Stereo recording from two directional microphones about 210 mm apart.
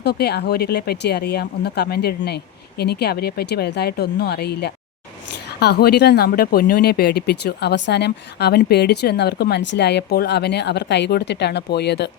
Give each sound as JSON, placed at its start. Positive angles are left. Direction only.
{"t": 0.0, "sound": "speech", "side_deg": 50}